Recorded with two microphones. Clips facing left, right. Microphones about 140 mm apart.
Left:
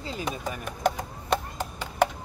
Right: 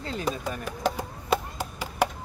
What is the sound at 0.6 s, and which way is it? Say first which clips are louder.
Chop: left 3 dB; 5° right (ahead or behind).